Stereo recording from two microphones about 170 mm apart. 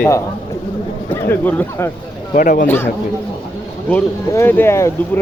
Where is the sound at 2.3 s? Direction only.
55° left (ahead or behind).